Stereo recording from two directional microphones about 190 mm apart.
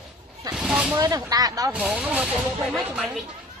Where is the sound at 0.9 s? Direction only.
20° right (ahead or behind).